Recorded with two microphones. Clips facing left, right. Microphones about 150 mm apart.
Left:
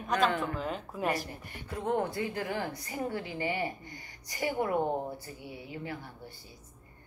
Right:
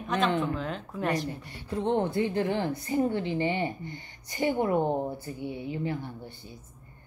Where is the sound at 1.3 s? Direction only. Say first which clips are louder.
Right 6 dB; 30° right (ahead or behind).